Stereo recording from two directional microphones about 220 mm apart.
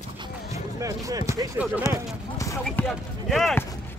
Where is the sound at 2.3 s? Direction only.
15° left (ahead or behind).